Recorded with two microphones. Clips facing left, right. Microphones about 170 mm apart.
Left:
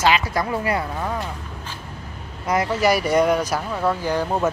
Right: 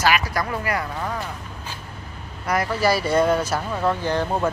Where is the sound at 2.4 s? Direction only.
20° left (ahead or behind).